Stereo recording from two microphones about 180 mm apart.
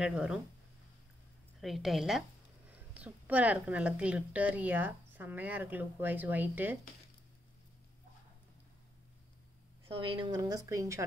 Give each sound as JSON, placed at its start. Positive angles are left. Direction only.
{"t": 0.0, "sound": "a woman's voice", "side_deg": -5}
{"t": 1.6, "sound": "a woman's voice", "side_deg": 0}
{"t": 9.8, "sound": "a woman's voice", "side_deg": -30}